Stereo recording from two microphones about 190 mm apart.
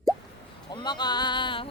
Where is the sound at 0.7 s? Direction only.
20° left (ahead or behind).